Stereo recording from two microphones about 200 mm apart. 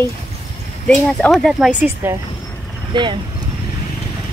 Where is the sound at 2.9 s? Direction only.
25° right (ahead or behind).